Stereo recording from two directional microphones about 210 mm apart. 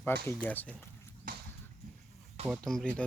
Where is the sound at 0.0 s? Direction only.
10° left (ahead or behind).